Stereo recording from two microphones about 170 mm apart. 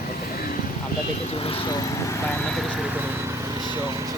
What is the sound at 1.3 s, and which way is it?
Speech, 35° left (ahead or behind).